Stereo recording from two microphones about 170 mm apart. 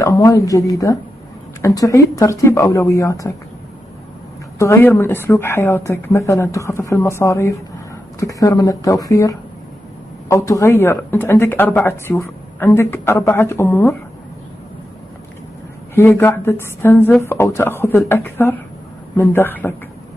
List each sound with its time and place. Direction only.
0.0 s speech: 15° left (ahead or behind)
4.6 s speech: 15° left (ahead or behind)
15.9 s speech: 15° left (ahead or behind)